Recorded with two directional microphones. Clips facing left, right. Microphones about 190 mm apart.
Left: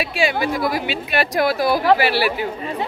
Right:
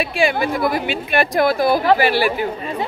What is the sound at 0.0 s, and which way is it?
A woman's voice, 50° right (ahead or behind).